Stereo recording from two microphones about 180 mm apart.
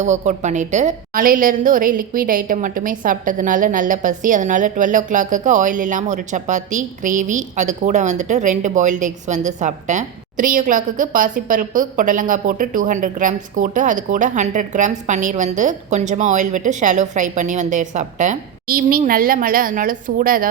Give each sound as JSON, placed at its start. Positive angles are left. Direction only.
{"t": 0.0, "sound": "a woman's voice", "side_deg": -40}